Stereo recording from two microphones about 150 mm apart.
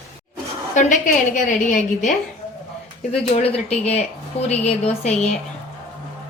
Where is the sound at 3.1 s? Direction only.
45° left (ahead or behind).